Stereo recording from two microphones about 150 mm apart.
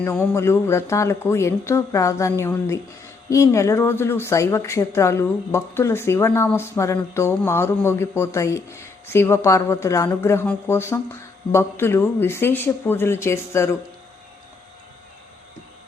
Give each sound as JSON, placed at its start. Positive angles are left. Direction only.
{"t": 0.0, "sound": "a woman's voice", "side_deg": 15}